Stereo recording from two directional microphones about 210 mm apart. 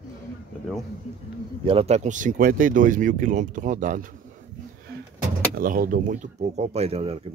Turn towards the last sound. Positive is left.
turn(degrees=-30)  # may be behind; listen again after turning